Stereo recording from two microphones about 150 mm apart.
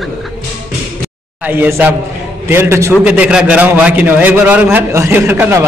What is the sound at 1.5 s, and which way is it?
A man's voice, 15° right (ahead or behind).